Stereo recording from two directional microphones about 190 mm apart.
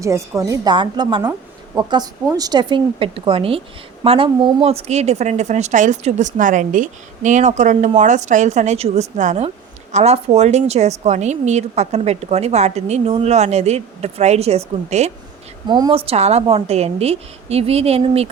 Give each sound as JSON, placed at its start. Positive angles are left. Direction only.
{"t": 0.0, "sound": "a woman's voice", "side_deg": -15}
{"t": 15.6, "sound": "a woman's voice", "side_deg": -20}